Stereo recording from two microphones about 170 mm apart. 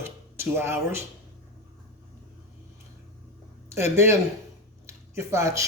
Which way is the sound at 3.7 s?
15° right (ahead or behind).